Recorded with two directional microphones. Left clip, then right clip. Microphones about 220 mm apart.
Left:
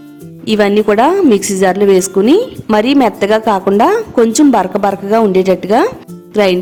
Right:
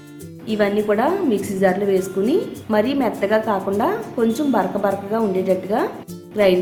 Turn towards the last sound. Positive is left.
turn(degrees=50)  # may be behind; listen again after turning